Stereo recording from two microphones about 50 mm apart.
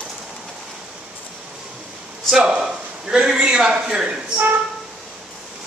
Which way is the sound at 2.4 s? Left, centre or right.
Centre.